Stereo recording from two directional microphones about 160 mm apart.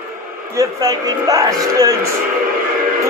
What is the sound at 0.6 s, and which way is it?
A man's voice, 25° right (ahead or behind).